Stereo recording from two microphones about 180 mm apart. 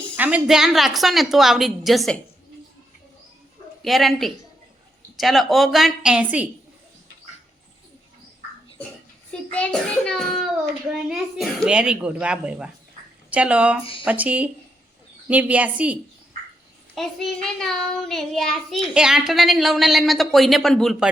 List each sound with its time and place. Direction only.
0.2 s child singing: 5° right (ahead or behind)
3.8 s child singing: centre (ahead or behind)
9.5 s child singing: 5° left (ahead or behind)
13.3 s a woman's voice: 5° right (ahead or behind)
16.9 s child singing: centre (ahead or behind)